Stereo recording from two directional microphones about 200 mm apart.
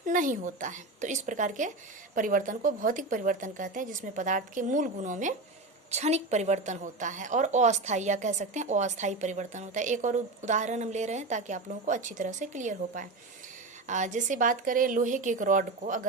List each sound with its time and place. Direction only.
0.0 s a woman's voice: 40° right (ahead or behind)